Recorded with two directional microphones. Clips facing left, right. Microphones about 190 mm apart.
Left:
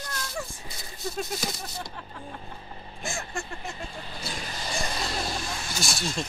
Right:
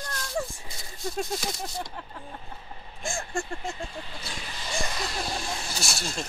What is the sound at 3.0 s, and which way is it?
Speech, 30° right (ahead or behind).